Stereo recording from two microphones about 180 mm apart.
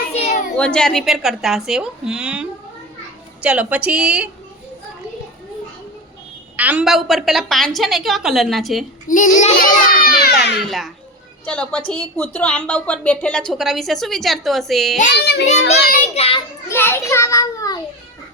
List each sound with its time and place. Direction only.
0.1 s a sound: 35° left (ahead or behind)
0.5 s a woman's voice: 5° left (ahead or behind)
6.6 s a woman's voice: 10° right (ahead or behind)
9.0 s a child's voice: 45° left (ahead or behind)
10.7 s a woman's voice: centre (ahead or behind)
15.1 s a child's voice: 65° left (ahead or behind)
16.1 s a child's voice: 30° left (ahead or behind)
16.6 s a child's voice: 15° left (ahead or behind)